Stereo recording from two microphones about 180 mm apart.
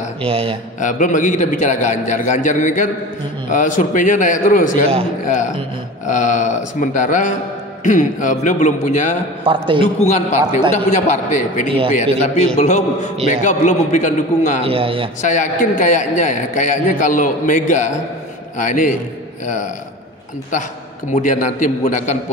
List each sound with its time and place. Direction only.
0.2 s a man's voice: 30° right (ahead or behind)
0.7 s a man's voice: 45° left (ahead or behind)
9.4 s a man's voice: 30° right (ahead or behind)
9.9 s a man's voice: 40° left (ahead or behind)
14.6 s a man's voice: 30° right (ahead or behind)
15.2 s a man's voice: 45° left (ahead or behind)
21.1 s a man's voice: 45° left (ahead or behind)